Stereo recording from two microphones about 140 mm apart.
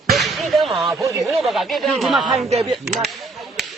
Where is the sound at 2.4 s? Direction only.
50° right (ahead or behind).